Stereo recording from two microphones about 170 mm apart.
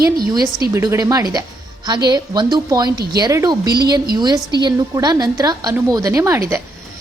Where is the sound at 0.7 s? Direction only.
20° right (ahead or behind).